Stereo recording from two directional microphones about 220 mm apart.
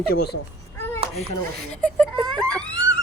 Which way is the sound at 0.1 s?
45° left (ahead or behind).